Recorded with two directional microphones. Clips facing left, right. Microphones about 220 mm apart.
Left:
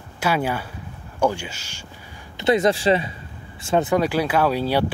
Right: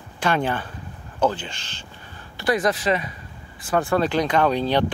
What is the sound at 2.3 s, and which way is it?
Speech, 25° left (ahead or behind).